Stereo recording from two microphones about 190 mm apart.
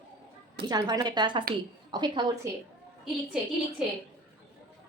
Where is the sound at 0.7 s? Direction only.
20° right (ahead or behind).